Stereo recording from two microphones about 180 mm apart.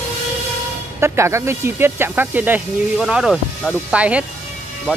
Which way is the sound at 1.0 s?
15° right (ahead or behind).